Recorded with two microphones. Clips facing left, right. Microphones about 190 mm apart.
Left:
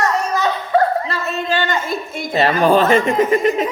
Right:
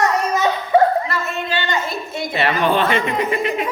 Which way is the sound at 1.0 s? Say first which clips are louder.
Left 2 dB; 35° left (ahead or behind).